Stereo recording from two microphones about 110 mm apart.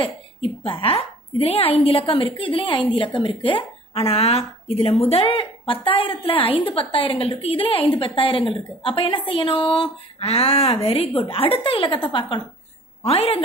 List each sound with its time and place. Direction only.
0.0 s a woman's voice: 55° left (ahead or behind)
13.0 s a woman's voice: 60° left (ahead or behind)